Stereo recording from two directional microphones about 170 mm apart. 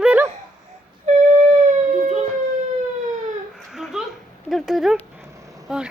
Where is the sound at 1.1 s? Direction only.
40° right (ahead or behind).